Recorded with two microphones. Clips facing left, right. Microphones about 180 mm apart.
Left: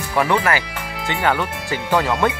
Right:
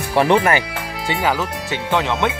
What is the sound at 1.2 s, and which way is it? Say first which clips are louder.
Speech: left 2 dB; 5° right (ahead or behind).